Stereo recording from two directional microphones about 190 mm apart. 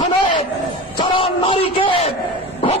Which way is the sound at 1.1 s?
30° left (ahead or behind).